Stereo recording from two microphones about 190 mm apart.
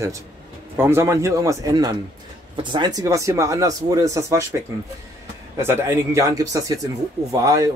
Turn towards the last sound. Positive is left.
turn(degrees=-20)  # may be behind; listen again after turning